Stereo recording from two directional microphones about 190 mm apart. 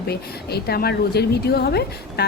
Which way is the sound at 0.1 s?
55° left (ahead or behind).